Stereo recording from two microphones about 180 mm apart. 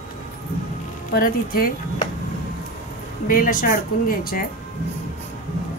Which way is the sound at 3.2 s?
50° left (ahead or behind).